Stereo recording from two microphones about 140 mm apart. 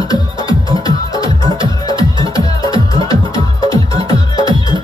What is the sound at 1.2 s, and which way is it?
Music, 35° right (ahead or behind).